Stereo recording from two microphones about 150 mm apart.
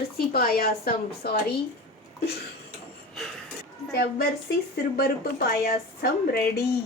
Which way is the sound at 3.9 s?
90° left.